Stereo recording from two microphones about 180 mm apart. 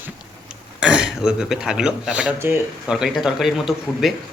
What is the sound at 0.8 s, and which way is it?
A man's voice, 5° right (ahead or behind).